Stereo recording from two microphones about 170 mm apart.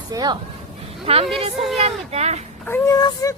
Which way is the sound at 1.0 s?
35° right (ahead or behind).